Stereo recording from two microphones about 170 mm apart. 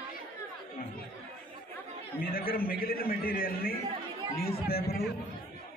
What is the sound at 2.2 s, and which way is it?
A man's voice, 60° left (ahead or behind).